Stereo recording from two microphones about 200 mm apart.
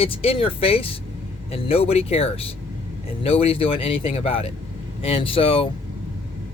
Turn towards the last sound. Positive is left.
turn(degrees=25)  # may be behind; listen again after turning